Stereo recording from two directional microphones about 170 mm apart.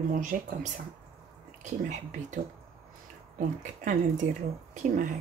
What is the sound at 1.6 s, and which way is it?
Speech, 45° right (ahead or behind).